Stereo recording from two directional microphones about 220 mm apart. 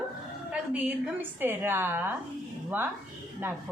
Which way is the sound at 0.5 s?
5° right (ahead or behind).